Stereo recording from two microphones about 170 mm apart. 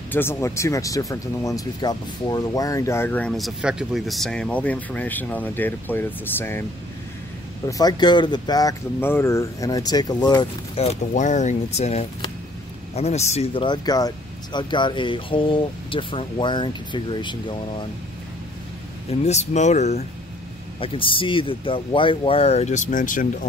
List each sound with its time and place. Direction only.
0.1 s speech: 15° left (ahead or behind)
7.6 s speech: 20° left (ahead or behind)
19.0 s speech: 40° left (ahead or behind)
20.8 s speech: 30° left (ahead or behind); by 23.2 s 50° left (ahead or behind)